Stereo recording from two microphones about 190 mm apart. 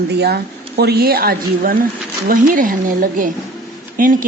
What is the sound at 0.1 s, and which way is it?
Speech, 60° right (ahead or behind).